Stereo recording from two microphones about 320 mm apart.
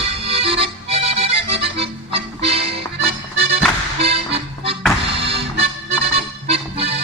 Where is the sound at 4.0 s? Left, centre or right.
Centre.